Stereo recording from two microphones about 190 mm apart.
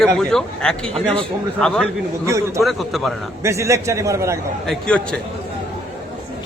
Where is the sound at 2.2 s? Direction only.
15° right (ahead or behind).